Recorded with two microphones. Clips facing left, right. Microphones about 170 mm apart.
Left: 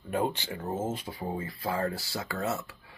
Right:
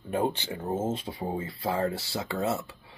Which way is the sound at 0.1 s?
25° right (ahead or behind).